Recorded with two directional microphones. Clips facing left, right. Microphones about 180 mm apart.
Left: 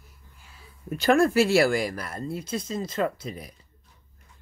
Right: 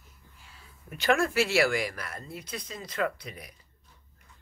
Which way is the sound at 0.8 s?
40° left (ahead or behind).